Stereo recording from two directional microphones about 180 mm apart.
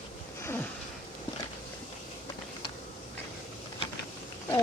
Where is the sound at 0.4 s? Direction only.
15° left (ahead or behind).